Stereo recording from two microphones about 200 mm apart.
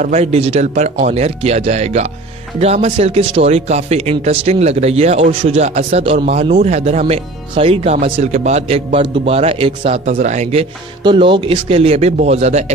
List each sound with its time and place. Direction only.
0.0 s speech: 35° right (ahead or behind)